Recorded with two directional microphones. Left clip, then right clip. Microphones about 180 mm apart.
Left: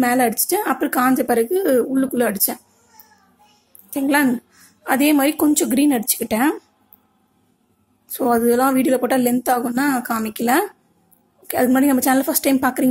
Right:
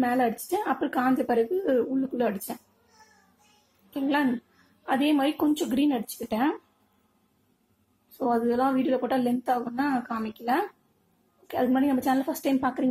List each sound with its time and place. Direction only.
0.0 s speech: 15° left (ahead or behind)
3.9 s speech: 15° left (ahead or behind)
8.2 s a woman's voice: 20° left (ahead or behind)